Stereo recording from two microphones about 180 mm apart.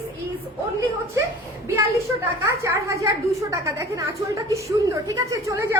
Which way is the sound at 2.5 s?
15° right (ahead or behind).